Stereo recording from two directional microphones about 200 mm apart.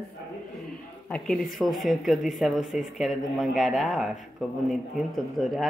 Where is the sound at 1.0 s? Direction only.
5° left (ahead or behind).